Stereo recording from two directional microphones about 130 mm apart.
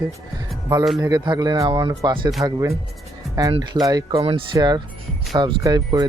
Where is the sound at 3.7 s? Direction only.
35° right (ahead or behind).